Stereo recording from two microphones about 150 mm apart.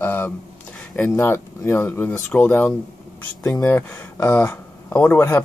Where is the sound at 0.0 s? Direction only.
15° left (ahead or behind).